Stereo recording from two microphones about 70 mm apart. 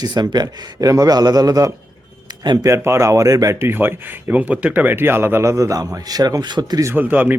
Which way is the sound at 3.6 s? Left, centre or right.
Right.